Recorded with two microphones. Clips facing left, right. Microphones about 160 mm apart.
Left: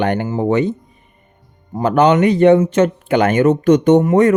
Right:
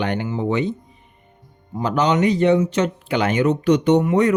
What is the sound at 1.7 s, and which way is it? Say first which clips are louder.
Speech: left 6 dB; 55° left (ahead or behind).